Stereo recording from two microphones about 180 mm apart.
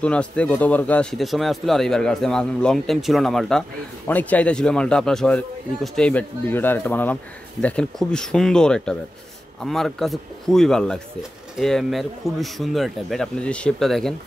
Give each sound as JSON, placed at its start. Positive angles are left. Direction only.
{"t": 0.0, "sound": "speech", "side_deg": 5}